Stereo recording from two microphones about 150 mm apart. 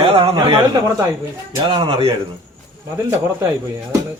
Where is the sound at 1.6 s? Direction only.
35° right (ahead or behind).